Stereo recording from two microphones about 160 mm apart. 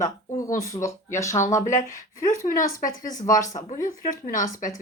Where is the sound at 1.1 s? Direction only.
20° left (ahead or behind).